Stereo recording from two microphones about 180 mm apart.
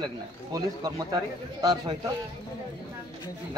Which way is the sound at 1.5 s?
20° right (ahead or behind).